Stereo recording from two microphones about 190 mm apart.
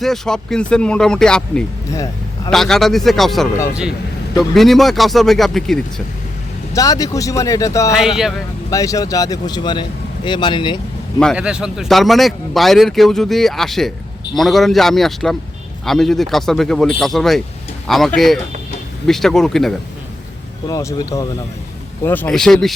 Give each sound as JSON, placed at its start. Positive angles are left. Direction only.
{"t": 0.0, "sound": "speech", "side_deg": 0}
{"t": 1.9, "sound": "a sound", "side_deg": 15}
{"t": 2.5, "sound": "speech", "side_deg": 0}
{"t": 6.7, "sound": "speech", "side_deg": 20}
{"t": 7.9, "sound": "speech", "side_deg": 0}
{"t": 8.7, "sound": "speech", "side_deg": 15}
{"t": 11.2, "sound": "speech", "side_deg": 0}
{"t": 20.7, "sound": "speech", "side_deg": 20}